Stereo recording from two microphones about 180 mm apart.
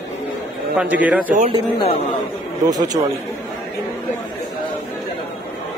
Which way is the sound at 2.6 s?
20° right (ahead or behind).